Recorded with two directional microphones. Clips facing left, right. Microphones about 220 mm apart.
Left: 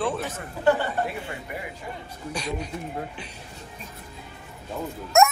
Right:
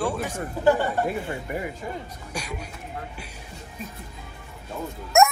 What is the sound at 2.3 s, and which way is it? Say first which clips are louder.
Speech: left 3 dB; 10° right (ahead or behind).